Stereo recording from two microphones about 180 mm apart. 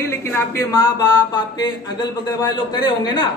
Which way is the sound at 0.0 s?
15° left (ahead or behind).